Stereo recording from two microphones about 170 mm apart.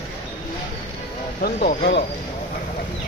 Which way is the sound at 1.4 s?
60° left (ahead or behind).